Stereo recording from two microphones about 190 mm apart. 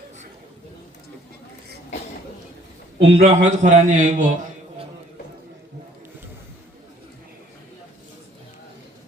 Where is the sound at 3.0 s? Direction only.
40° right (ahead or behind).